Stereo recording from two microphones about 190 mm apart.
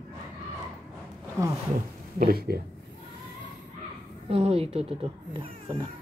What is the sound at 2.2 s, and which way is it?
Speech, 55° right (ahead or behind).